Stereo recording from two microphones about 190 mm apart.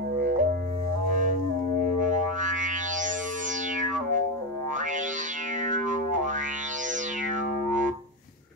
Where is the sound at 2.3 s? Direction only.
40° right (ahead or behind).